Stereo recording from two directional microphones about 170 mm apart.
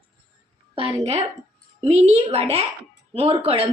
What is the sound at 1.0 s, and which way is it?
A woman's voice, 40° right (ahead or behind).